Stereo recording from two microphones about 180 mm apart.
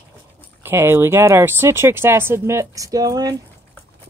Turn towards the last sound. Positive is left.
turn(degrees=-20)  # may be behind; listen again after turning